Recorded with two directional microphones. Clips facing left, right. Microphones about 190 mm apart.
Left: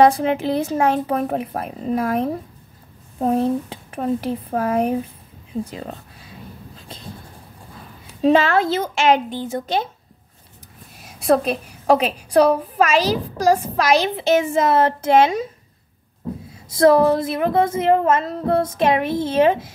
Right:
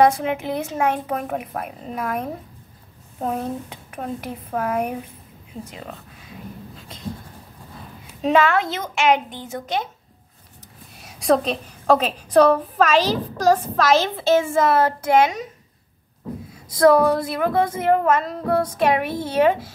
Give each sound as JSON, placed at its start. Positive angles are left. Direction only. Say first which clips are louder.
{"t": 0.0, "sound": "speech", "louder": "left 3 dB", "side_deg": 30}
{"t": 8.2, "sound": "speech", "louder": "left 3 dB", "side_deg": 30}
{"t": 11.0, "sound": "a sound", "louder": "left 1 dB", "side_deg": 0}
{"t": 11.5, "sound": "a woman's voice", "louder": "left 1 dB", "side_deg": 15}
{"t": 16.6, "sound": "a woman's voice", "louder": "left 1 dB", "side_deg": 25}